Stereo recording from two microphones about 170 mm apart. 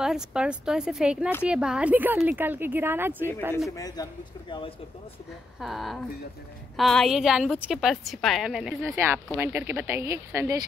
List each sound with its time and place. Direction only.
0.0 s a woman's voice: 5° right (ahead or behind)
3.7 s speech: 20° left (ahead or behind)
5.6 s a woman's voice: centre (ahead or behind); by 10.5 s 15° right (ahead or behind)